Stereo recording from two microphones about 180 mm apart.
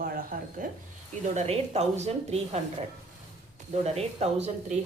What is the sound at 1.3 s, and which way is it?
A woman's voice, 35° right (ahead or behind).